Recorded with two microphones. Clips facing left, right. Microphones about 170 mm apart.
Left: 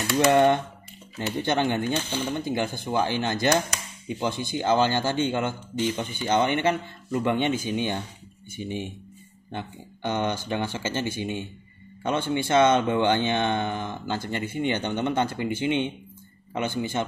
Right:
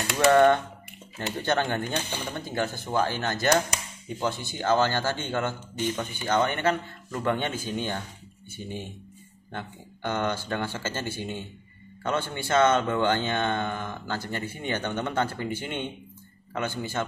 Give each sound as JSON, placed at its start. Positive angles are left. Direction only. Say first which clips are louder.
{"t": 0.2, "sound": "speech", "louder": "right 1 dB", "side_deg": 20}